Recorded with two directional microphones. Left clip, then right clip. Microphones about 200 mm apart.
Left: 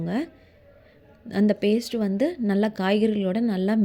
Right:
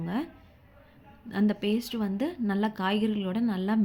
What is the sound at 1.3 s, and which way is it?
A woman's voice, 30° left (ahead or behind).